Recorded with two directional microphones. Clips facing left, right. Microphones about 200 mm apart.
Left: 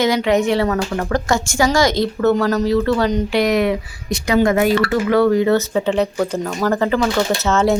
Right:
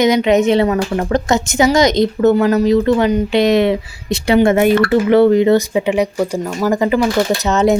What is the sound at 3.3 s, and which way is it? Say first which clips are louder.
Speech: right 4 dB; 25° right (ahead or behind).